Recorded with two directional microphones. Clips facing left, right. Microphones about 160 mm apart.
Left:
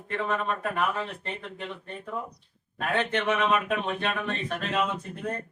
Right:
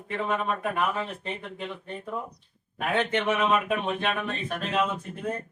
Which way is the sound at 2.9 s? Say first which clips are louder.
Right 1 dB; 5° right (ahead or behind).